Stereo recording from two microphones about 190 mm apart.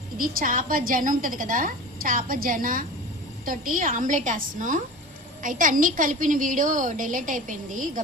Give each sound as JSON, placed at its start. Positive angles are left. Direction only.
{"t": 0.2, "sound": "a woman's voice", "side_deg": -45}